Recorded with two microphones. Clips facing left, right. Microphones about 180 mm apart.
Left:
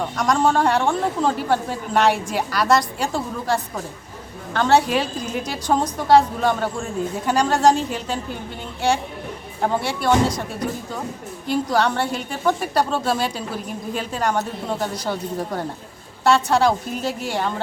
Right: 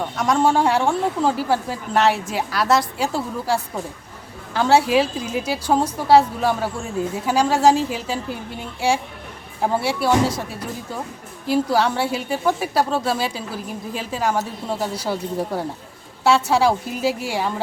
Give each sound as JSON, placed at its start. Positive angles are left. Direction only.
{"t": 0.2, "sound": "a woman's voice", "side_deg": -5}